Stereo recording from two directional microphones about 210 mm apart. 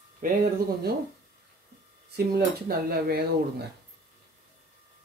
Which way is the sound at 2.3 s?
45° right (ahead or behind).